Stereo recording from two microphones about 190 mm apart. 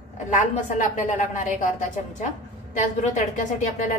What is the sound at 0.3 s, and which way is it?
A woman's voice, 40° left (ahead or behind).